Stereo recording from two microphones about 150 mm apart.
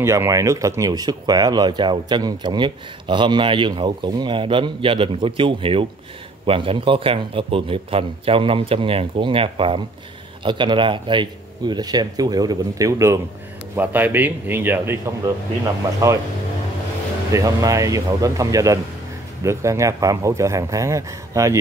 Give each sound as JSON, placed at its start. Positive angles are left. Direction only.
{"t": 0.0, "sound": "a man's voice", "side_deg": -20}
{"t": 17.3, "sound": "speech", "side_deg": -20}